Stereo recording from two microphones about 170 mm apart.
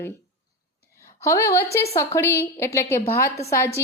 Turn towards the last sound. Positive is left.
turn(degrees=15)  # may be behind; listen again after turning